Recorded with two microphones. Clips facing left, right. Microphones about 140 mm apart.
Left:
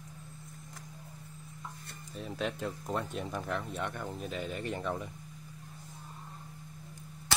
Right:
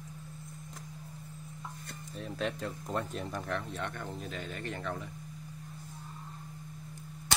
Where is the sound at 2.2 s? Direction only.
Centre (ahead or behind).